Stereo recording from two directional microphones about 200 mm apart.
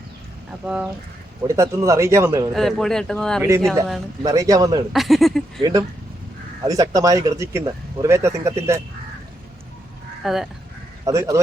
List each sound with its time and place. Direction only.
0.6 s speech: 5° right (ahead or behind)
2.5 s speech: centre (ahead or behind)
3.4 s speech: 15° right (ahead or behind)
4.9 s speech: centre (ahead or behind)
5.5 s speech: 20° right (ahead or behind)
10.2 s speech: centre (ahead or behind)
11.0 s speech: 15° right (ahead or behind)